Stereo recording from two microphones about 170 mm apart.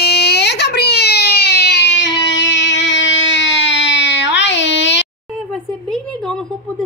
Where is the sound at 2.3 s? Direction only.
90° left.